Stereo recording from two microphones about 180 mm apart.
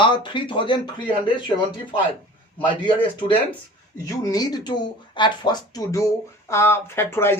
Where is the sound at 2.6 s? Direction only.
25° left (ahead or behind).